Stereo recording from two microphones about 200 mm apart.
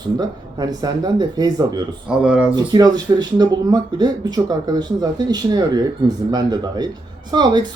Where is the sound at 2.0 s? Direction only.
5° right (ahead or behind).